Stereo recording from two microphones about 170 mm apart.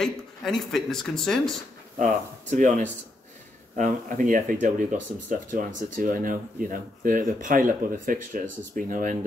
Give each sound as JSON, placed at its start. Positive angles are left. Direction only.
{"t": 0.0, "sound": "speech", "side_deg": 5}
{"t": 2.5, "sound": "speech", "side_deg": -45}